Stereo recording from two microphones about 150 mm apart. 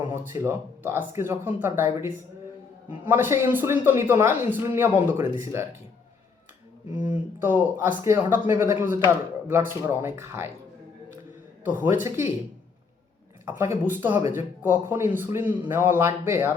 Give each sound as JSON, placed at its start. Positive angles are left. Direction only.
{"t": 0.0, "sound": "a man's voice", "side_deg": -15}
{"t": 6.9, "sound": "a man's voice", "side_deg": -10}
{"t": 11.6, "sound": "a man's voice", "side_deg": -15}
{"t": 13.4, "sound": "a man's voice", "side_deg": -15}